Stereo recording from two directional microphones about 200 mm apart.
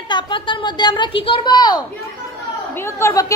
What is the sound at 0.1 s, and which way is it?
A woman's voice, 25° left (ahead or behind).